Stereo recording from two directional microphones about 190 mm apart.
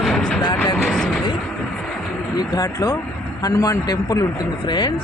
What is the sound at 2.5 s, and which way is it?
A man's voice, 20° left (ahead or behind).